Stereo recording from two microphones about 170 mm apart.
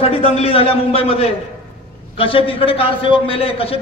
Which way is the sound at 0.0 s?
35° left (ahead or behind).